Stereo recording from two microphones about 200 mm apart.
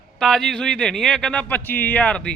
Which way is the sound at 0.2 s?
Centre (ahead or behind).